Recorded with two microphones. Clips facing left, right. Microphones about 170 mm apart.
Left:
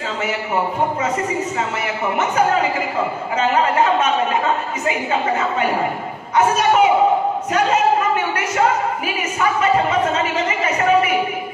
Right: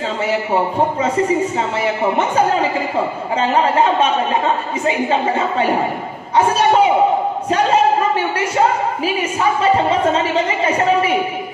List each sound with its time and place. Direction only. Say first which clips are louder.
2.1 s a woman's voice: left 2 dB; 30° right (ahead or behind)
6.3 s a woman's voice: right 2 dB; 30° right (ahead or behind)
9.6 s a woman's voice: right 2 dB; 30° right (ahead or behind)